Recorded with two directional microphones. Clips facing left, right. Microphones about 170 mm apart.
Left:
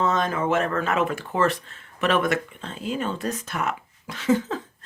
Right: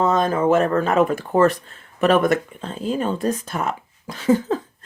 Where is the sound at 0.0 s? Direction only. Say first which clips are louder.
Right 5 dB; 35° right (ahead or behind).